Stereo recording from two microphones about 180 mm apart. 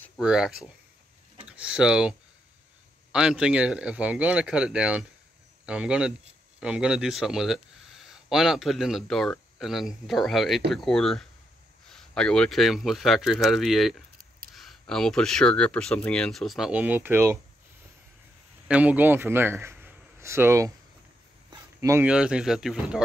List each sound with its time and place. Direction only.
0.2 s speech: 5° right (ahead or behind)
18.7 s a man's voice: 10° right (ahead or behind)
21.5 s a sound: 15° right (ahead or behind)
22.0 s speech: 5° right (ahead or behind)